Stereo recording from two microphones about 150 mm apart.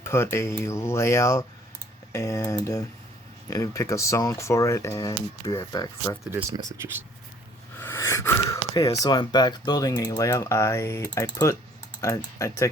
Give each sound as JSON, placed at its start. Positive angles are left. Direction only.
{"t": 0.0, "sound": "speech", "side_deg": 15}
{"t": 6.5, "sound": "speech", "side_deg": -25}
{"t": 7.8, "sound": "speech", "side_deg": 15}